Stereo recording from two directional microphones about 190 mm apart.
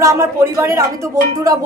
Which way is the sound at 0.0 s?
15° right (ahead or behind).